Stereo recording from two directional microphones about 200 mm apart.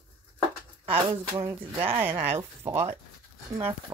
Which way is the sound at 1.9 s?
10° right (ahead or behind).